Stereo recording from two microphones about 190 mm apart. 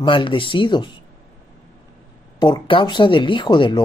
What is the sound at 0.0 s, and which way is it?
Speech, 25° left (ahead or behind).